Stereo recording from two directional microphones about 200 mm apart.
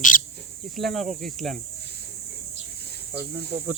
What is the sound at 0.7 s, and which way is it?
Speech, centre (ahead or behind).